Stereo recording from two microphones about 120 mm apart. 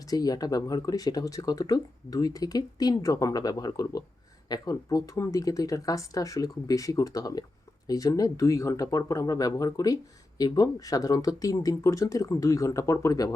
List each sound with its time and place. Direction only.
0.1 s speech: 30° left (ahead or behind)